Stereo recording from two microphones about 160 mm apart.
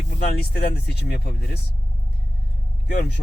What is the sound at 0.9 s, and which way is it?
Speech, 90° left.